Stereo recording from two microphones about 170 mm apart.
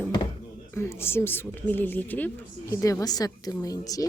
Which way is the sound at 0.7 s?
15° left (ahead or behind).